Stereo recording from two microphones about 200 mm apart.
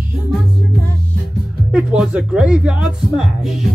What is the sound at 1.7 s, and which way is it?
Speech, 5° right (ahead or behind).